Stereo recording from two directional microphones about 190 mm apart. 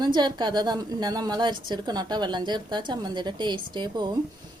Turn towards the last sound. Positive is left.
turn(degrees=-25)  # may be behind; listen again after turning